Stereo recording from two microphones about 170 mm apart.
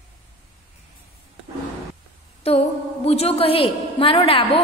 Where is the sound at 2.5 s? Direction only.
35° left (ahead or behind).